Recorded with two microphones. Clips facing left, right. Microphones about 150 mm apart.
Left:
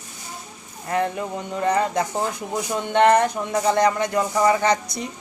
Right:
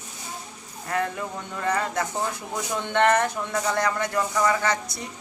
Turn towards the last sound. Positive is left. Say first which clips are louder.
# left 5 dB
turn(degrees=20)  # may be behind; listen again after turning